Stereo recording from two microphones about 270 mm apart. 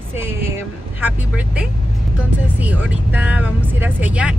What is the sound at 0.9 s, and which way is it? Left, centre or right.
Speech, centre.